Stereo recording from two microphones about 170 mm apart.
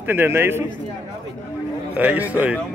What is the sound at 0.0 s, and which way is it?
Speech, 10° right (ahead or behind).